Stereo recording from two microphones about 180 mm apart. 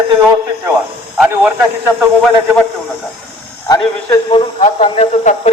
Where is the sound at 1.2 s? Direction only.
5° right (ahead or behind).